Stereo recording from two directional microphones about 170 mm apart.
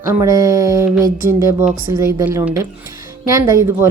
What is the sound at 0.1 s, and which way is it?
A woman's voice, 20° right (ahead or behind).